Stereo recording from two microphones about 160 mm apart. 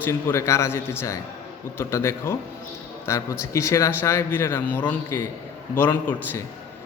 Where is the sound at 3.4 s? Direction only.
20° left (ahead or behind).